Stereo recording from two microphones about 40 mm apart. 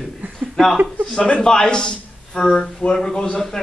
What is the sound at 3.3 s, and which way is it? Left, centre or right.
Speech, centre.